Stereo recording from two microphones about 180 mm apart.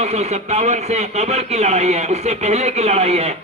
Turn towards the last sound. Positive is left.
turn(degrees=-35)  # may be behind; listen again after turning